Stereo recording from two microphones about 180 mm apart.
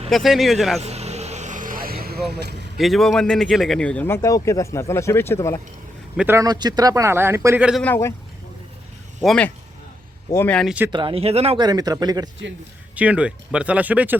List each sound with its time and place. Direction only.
0.1 s a man's voice: centre (ahead or behind)
0.8 s vehicle: 35° right (ahead or behind); by 2.6 s 65° right (ahead or behind)
2.7 s a man's voice: centre (ahead or behind)
6.1 s a man's voice: 15° right (ahead or behind)
7.8 s a man's voice: 10° left (ahead or behind)
9.2 s a man's voice: 5° left (ahead or behind)
10.9 s speech: 30° right (ahead or behind)
13.0 s a man's voice: 5° right (ahead or behind)